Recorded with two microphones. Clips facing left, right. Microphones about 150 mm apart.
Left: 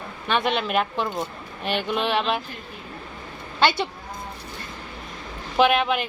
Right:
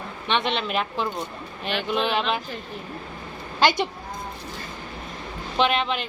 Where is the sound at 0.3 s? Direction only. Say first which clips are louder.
Left 2 dB; 5° left (ahead or behind).